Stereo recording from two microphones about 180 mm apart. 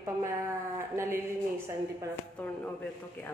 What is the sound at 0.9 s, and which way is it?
A woman's voice, 15° right (ahead or behind).